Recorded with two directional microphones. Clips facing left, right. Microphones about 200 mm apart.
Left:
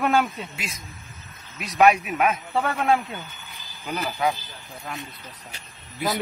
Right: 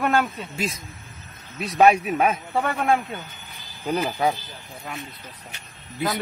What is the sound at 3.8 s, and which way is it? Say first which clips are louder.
Speech: right 3 dB; 30° right (ahead or behind).